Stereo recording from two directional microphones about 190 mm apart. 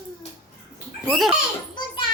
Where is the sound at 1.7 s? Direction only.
25° left (ahead or behind).